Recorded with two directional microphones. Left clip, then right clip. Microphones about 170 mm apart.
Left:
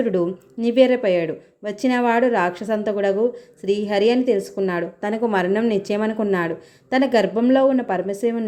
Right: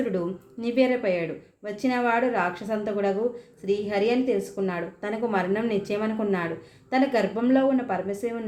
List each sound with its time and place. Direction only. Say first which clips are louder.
0.0 s speech: left 7 dB; 40° left (ahead or behind)